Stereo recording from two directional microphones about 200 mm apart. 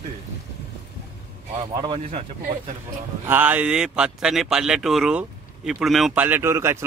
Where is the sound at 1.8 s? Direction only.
25° right (ahead or behind).